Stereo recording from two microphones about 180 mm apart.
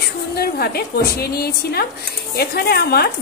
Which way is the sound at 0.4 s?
60° left (ahead or behind).